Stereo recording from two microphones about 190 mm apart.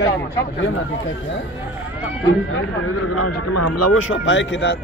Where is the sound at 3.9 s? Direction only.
85° left; by 4.8 s 65° left (ahead or behind).